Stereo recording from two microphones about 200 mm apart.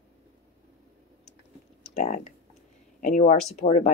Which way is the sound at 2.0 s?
35° left (ahead or behind).